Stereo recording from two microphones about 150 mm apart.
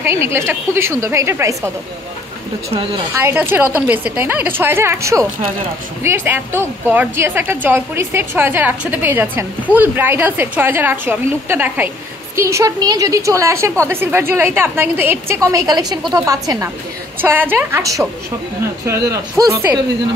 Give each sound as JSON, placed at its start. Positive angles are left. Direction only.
{"t": 0.0, "sound": "a woman's voice", "side_deg": -15}
{"t": 3.2, "sound": "a woman's voice", "side_deg": -15}